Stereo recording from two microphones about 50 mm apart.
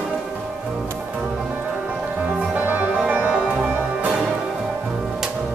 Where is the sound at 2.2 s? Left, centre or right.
Right.